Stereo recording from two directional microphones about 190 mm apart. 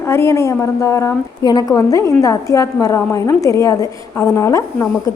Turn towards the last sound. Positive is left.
turn(degrees=15)  # may be behind; listen again after turning